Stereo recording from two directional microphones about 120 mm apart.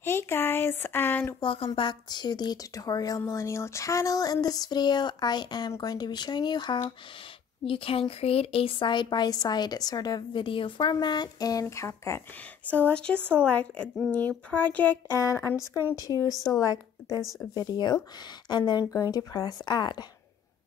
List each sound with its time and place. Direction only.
0.0 s speech: 20° left (ahead or behind)
1.4 s a woman's voice: 45° left (ahead or behind)
7.6 s a woman's voice: 50° left (ahead or behind); by 12.2 s 25° left (ahead or behind)
12.6 s a woman's voice: 15° left (ahead or behind); by 20.1 s 35° left (ahead or behind)